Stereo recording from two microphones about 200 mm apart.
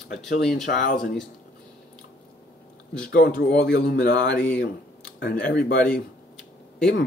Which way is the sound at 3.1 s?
50° left (ahead or behind).